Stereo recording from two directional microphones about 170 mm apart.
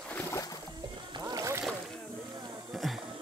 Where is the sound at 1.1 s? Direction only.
20° right (ahead or behind).